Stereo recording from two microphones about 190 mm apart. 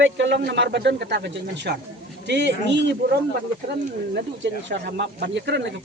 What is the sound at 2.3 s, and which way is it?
Speech, 65° right (ahead or behind).